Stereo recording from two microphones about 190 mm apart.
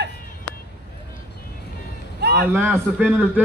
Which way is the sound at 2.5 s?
10° right (ahead or behind).